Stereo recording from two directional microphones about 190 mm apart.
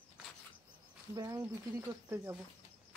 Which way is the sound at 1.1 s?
20° right (ahead or behind).